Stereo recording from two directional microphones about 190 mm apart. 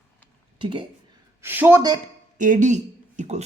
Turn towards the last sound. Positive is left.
turn(degrees=-40)  # may be behind; listen again after turning